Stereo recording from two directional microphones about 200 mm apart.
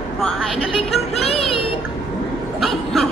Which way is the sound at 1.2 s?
30° left (ahead or behind).